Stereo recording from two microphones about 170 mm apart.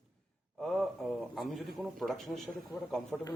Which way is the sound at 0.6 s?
Centre (ahead or behind).